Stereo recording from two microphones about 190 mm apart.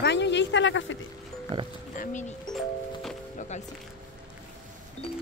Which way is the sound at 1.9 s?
45° left (ahead or behind).